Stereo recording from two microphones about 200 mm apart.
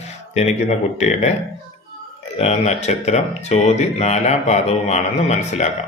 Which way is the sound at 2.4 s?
35° left (ahead or behind).